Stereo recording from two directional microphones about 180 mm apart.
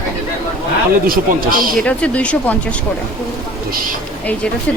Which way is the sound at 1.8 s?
5° left (ahead or behind).